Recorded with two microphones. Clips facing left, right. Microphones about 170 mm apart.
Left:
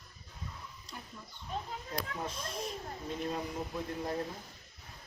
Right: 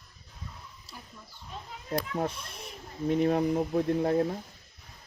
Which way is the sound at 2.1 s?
60° right (ahead or behind).